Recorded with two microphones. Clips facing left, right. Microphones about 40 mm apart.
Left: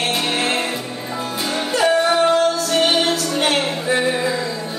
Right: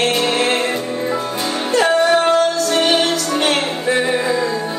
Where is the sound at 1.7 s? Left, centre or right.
Right.